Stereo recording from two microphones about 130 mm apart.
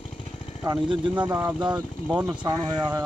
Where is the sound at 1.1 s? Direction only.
15° right (ahead or behind).